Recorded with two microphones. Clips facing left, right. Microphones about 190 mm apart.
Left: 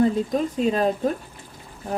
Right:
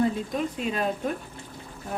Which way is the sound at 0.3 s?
35° left (ahead or behind).